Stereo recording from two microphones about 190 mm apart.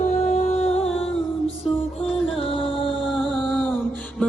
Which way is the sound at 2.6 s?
Centre (ahead or behind).